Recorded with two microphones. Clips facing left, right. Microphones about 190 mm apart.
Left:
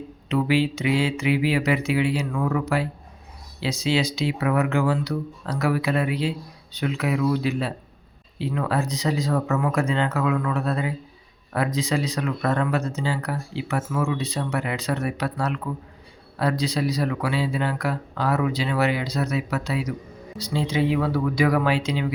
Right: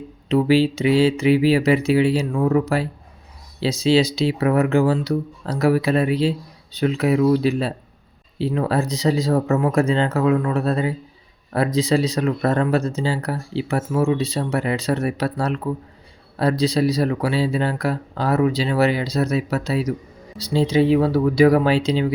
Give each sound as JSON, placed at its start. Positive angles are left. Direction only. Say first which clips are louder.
{"t": 0.3, "sound": "speech", "louder": "right 5 dB", "side_deg": -35}